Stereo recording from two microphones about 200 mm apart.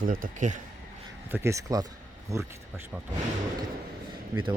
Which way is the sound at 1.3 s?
15° right (ahead or behind).